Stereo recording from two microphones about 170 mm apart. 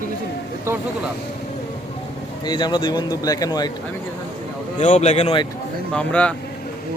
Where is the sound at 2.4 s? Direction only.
25° left (ahead or behind).